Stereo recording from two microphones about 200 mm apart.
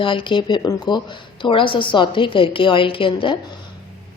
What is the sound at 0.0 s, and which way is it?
A woman's voice, 25° left (ahead or behind).